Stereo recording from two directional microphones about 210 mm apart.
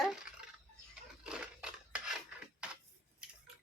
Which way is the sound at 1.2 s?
5° right (ahead or behind).